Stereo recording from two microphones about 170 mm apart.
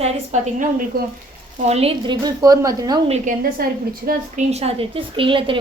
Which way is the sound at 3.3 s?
50° right (ahead or behind).